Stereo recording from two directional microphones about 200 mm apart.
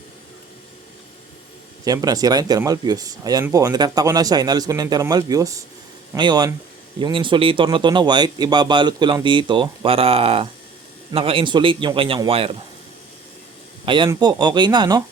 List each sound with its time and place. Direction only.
1.8 s speech: 20° right (ahead or behind)
13.8 s speech: 25° right (ahead or behind)